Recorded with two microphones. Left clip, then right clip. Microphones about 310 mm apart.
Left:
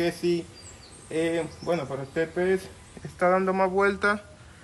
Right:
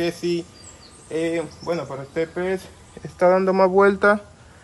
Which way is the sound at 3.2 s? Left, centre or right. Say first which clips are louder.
Right 6 dB; right.